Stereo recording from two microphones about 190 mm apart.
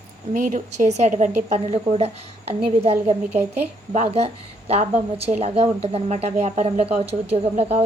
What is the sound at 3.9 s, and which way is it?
A woman's voice, 35° right (ahead or behind).